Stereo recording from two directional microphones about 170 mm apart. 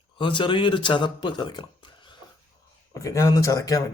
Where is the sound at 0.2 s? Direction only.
30° left (ahead or behind).